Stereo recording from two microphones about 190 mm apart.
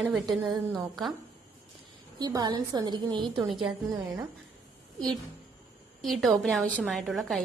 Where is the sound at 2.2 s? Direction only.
20° right (ahead or behind).